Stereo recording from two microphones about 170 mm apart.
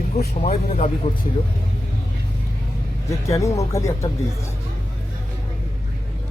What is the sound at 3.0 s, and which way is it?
Speech, 20° left (ahead or behind).